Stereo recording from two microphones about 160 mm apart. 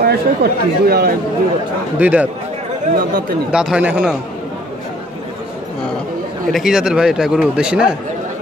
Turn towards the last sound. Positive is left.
turn(degrees=-5)  # may be behind; listen again after turning